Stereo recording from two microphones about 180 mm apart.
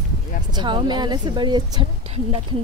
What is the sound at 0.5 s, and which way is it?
A woman's voice, 25° right (ahead or behind).